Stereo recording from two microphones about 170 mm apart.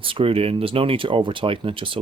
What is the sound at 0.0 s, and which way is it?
Speech, 30° right (ahead or behind).